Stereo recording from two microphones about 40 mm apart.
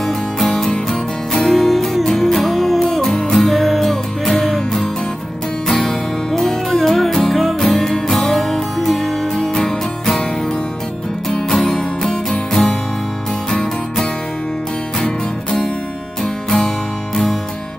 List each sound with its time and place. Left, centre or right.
0.0 s music: centre
11.2 s music: centre
15.0 s music: centre